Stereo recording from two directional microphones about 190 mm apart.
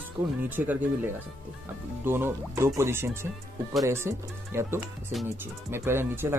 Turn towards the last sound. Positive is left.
turn(degrees=-10)  # may be behind; listen again after turning